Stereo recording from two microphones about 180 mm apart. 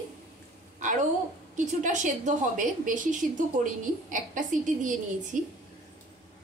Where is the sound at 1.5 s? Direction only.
45° right (ahead or behind).